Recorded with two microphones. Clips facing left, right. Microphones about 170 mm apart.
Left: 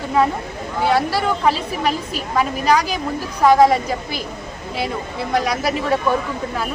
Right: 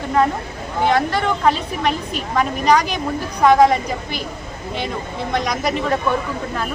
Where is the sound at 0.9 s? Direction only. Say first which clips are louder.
Even; 5° left (ahead or behind).